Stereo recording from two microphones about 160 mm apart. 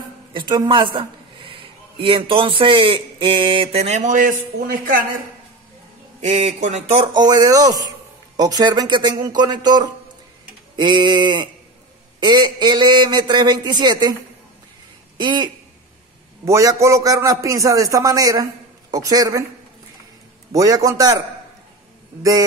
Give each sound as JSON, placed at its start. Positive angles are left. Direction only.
{"t": 0.3, "sound": "a man's voice", "side_deg": -30}
{"t": 4.6, "sound": "speech", "side_deg": -70}
{"t": 6.2, "sound": "speech", "side_deg": -45}
{"t": 7.2, "sound": "a man's voice", "side_deg": -25}
{"t": 15.1, "sound": "a man's voice", "side_deg": -30}
{"t": 20.5, "sound": "a man's voice", "side_deg": -20}